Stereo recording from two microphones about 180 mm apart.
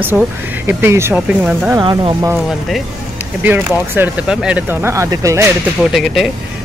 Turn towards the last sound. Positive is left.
turn(degrees=0)  # may be behind; listen again after turning